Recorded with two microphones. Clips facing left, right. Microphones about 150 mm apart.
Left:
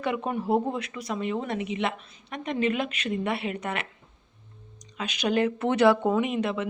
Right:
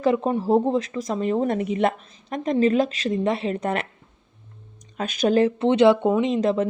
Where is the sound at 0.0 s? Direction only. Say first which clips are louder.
Right 7 dB; 35° right (ahead or behind).